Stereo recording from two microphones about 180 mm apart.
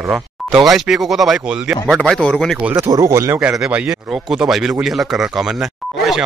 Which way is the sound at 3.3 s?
5° right (ahead or behind).